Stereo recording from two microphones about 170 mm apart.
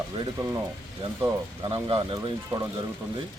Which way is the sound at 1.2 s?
20° right (ahead or behind).